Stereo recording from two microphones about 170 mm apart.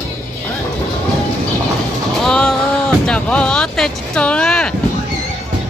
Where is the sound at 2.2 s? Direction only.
5° left (ahead or behind).